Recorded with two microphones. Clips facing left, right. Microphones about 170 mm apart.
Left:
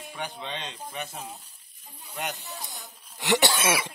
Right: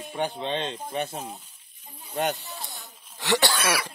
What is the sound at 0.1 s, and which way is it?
Speech, 30° right (ahead or behind).